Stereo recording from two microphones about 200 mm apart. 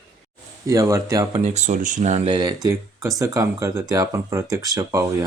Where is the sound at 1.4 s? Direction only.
35° right (ahead or behind); by 5.0 s 20° right (ahead or behind).